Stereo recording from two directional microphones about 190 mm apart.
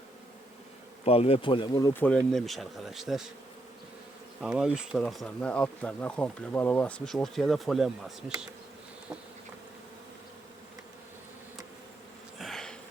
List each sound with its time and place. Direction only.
1.0 s speech: 30° left (ahead or behind)
1.9 s speech: 10° left (ahead or behind)
4.4 s speech: 5° right (ahead or behind)
12.4 s sniff: centre (ahead or behind)